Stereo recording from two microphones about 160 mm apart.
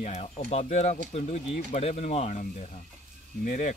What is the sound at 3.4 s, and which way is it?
Speech, 55° left (ahead or behind).